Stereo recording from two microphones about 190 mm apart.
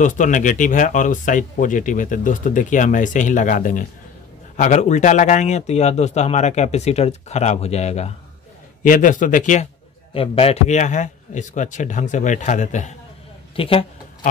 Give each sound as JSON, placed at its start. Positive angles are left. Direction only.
{"t": 0.0, "sound": "a man's voice", "side_deg": 40}
{"t": 10.1, "sound": "a man's voice", "side_deg": 30}
{"t": 13.6, "sound": "speech", "side_deg": 30}